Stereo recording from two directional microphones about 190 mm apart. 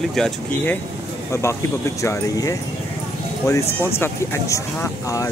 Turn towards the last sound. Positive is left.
turn(degrees=15)  # may be behind; listen again after turning